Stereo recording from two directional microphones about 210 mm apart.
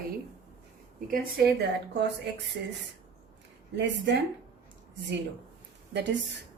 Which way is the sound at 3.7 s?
55° right (ahead or behind).